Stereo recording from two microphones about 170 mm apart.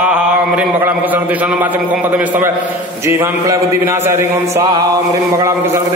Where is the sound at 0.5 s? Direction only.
10° right (ahead or behind).